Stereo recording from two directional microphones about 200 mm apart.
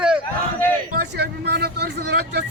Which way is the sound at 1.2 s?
55° right (ahead or behind).